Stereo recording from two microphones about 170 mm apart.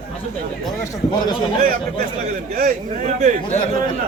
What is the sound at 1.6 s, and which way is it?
Speech, 55° right (ahead or behind).